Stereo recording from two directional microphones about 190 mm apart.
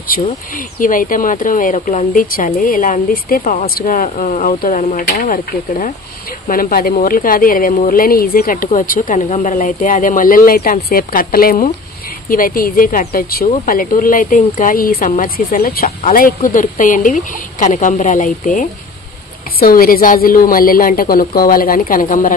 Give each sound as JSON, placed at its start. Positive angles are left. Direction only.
{"t": 0.7, "sound": "speech", "side_deg": 45}